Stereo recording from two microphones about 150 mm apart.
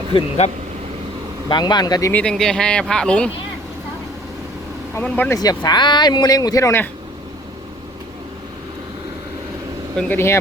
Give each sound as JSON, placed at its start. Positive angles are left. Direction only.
{"t": 0.1, "sound": "speech", "side_deg": 40}
{"t": 1.5, "sound": "speech", "side_deg": 30}
{"t": 2.1, "sound": "speech", "side_deg": 5}
{"t": 4.9, "sound": "speech", "side_deg": 10}
{"t": 5.4, "sound": "speech", "side_deg": 25}
{"t": 9.9, "sound": "speech", "side_deg": 5}